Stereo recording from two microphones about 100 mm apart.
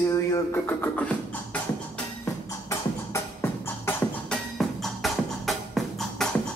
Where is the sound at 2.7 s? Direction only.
25° left (ahead or behind).